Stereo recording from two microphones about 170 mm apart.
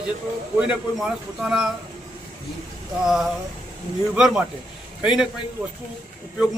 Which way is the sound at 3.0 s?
Centre (ahead or behind).